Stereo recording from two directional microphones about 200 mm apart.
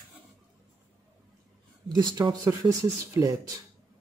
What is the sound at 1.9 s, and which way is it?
Speech, 20° right (ahead or behind).